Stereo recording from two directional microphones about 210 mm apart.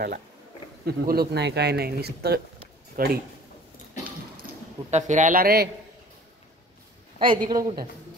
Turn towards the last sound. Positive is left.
turn(degrees=-25)  # may be behind; listen again after turning